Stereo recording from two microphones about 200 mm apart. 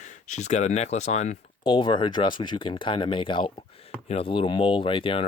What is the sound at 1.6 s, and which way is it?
Speech, 25° left (ahead or behind).